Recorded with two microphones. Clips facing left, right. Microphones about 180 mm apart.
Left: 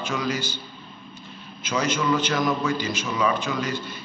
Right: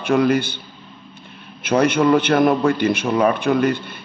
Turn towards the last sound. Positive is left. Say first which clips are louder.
# right 10 dB
turn(degrees=-60)  # may be behind; listen again after turning